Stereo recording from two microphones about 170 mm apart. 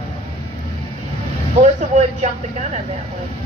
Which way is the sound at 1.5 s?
40° right (ahead or behind).